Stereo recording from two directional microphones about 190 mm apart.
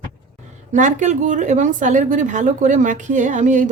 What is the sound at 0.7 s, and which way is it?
A woman's voice, 40° right (ahead or behind).